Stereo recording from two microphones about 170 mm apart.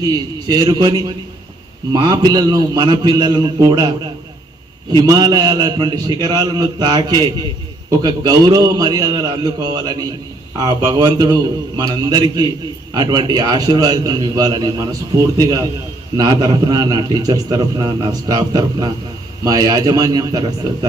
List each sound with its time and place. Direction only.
0.0 s a man's voice: 20° right (ahead or behind)
4.9 s a man's voice: 25° right (ahead or behind)